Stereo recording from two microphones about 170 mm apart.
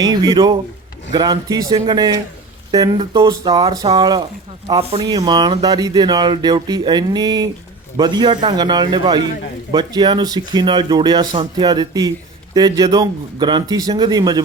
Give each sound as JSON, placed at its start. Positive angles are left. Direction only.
{"t": 0.0, "sound": "speech", "side_deg": -25}
{"t": 4.8, "sound": "speech", "side_deg": -35}
{"t": 5.0, "sound": "speech", "side_deg": -20}